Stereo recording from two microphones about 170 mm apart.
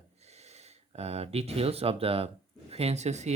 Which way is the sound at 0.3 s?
40° right (ahead or behind).